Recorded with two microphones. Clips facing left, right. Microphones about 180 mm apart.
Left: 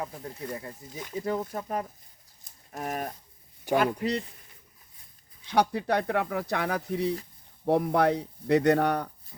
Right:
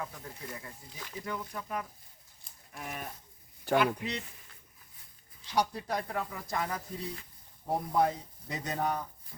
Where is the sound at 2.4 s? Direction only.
40° left (ahead or behind).